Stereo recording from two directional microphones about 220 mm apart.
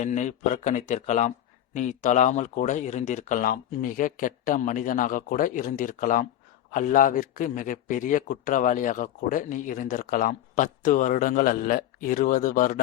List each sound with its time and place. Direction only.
0.0 s speech: 35° left (ahead or behind)